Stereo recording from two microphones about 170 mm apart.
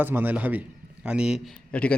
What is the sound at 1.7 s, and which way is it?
Speech, 10° left (ahead or behind).